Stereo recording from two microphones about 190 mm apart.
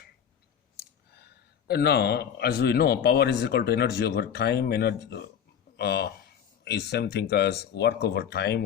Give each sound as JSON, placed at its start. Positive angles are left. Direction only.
{"t": 1.1, "sound": "a man's voice", "side_deg": 60}